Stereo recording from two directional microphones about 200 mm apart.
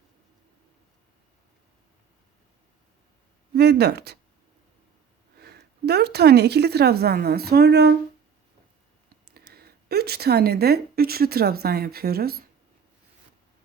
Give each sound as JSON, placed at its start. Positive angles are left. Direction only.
{"t": 3.5, "sound": "speech", "side_deg": -55}
{"t": 5.4, "sound": "a woman's voice", "side_deg": -55}
{"t": 9.3, "sound": "speech", "side_deg": -50}